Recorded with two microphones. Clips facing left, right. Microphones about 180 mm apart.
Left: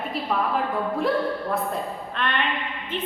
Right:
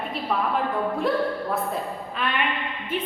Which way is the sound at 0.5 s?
Centre (ahead or behind).